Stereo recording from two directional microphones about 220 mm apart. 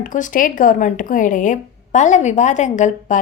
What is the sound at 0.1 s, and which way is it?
Speech, 35° left (ahead or behind).